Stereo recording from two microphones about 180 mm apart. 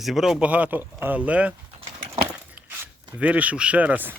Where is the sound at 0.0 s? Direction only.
Centre (ahead or behind).